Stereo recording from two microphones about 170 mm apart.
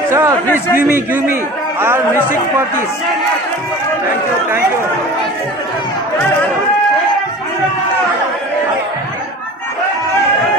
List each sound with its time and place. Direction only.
0.1 s a man's voice: 15° right (ahead or behind)